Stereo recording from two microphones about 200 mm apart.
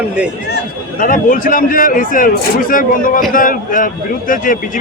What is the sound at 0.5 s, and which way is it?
A man's voice, 45° left (ahead or behind).